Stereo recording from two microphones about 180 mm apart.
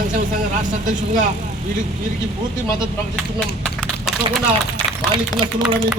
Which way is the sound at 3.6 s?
Centre (ahead or behind).